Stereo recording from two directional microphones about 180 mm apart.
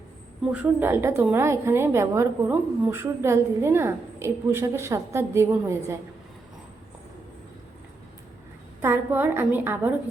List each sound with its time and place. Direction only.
0.5 s a woman's voice: 10° right (ahead or behind)
8.8 s a woman's voice: 10° right (ahead or behind)